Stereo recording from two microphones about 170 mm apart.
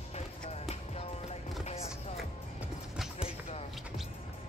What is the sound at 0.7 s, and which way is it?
Music, 40° left (ahead or behind).